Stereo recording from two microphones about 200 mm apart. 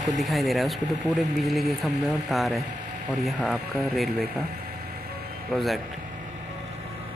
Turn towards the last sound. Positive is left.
turn(degrees=0)  # may be behind; listen again after turning